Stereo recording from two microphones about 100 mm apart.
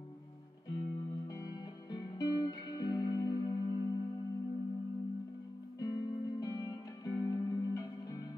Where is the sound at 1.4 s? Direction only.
40° left (ahead or behind).